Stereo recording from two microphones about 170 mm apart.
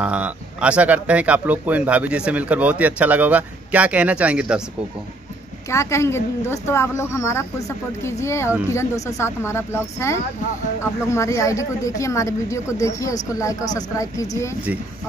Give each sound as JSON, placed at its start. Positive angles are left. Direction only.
{"t": 0.0, "sound": "speech", "side_deg": -10}
{"t": 5.7, "sound": "a woman's voice", "side_deg": 15}